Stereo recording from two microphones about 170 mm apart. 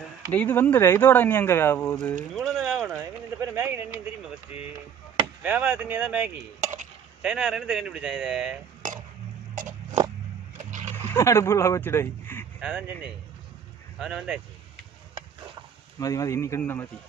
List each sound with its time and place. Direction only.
0.0 s speech: 10° left (ahead or behind)
2.3 s a sound: centre (ahead or behind)
3.0 s a sound: 15° right (ahead or behind)
5.4 s speech: 10° right (ahead or behind)
9.6 s a sound: 50° right (ahead or behind)
10.6 s splash: 45° right (ahead or behind)
11.1 s a man's voice: 15° left (ahead or behind)
12.5 s speech: 5° right (ahead or behind)
16.0 s speech: 20° left (ahead or behind)